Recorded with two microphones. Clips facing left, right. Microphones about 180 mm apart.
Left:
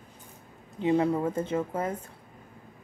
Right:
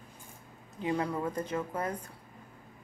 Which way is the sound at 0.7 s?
25° left (ahead or behind).